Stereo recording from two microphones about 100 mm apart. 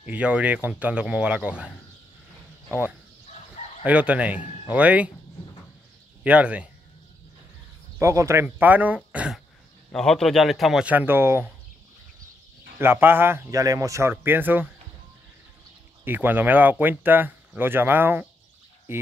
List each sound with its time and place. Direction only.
0.0 s speech: 15° right (ahead or behind)
2.7 s speech: 15° right (ahead or behind)
6.2 s speech: 15° right (ahead or behind)
8.0 s speech: 30° right (ahead or behind)
8.5 s speech: 15° right (ahead or behind)
9.9 s speech: 5° left (ahead or behind)
10.9 s speech: 20° right (ahead or behind)
12.7 s speech: 20° right (ahead or behind)
13.6 s speech: 35° right (ahead or behind)
14.1 s speech: 20° right (ahead or behind)
16.0 s speech: 20° right (ahead or behind)